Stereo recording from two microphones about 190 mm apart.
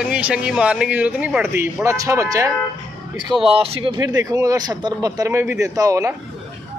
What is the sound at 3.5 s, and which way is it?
Speech, 30° right (ahead or behind).